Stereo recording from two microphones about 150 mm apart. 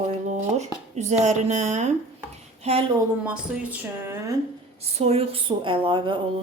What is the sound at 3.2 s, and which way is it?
Speech, 10° right (ahead or behind).